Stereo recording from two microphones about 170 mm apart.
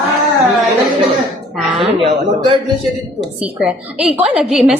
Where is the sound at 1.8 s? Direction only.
30° right (ahead or behind).